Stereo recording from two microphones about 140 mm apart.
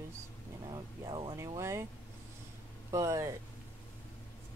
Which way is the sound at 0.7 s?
35° right (ahead or behind).